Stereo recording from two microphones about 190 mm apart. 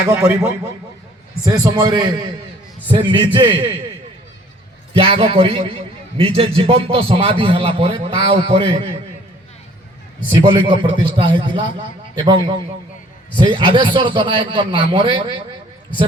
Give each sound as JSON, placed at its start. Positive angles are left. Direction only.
{"t": 0.0, "sound": "a man's voice", "side_deg": -15}
{"t": 4.9, "sound": "a man's voice", "side_deg": -30}
{"t": 10.4, "sound": "a man's voice", "side_deg": -25}